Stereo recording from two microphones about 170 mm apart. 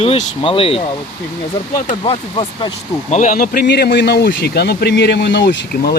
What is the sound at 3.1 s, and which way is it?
Speech, 45° left (ahead or behind).